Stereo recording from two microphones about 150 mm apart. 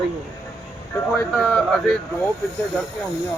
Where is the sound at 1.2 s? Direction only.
5° left (ahead or behind).